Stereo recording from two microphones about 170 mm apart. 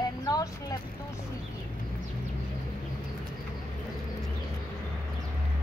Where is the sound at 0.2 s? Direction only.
20° left (ahead or behind).